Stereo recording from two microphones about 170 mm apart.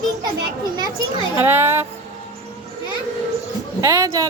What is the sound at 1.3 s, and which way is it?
Speech, 10° right (ahead or behind).